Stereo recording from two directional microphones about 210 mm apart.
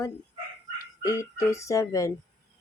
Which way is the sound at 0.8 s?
15° left (ahead or behind).